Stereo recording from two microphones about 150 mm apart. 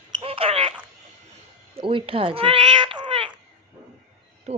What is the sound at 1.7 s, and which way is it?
Speech, 35° right (ahead or behind).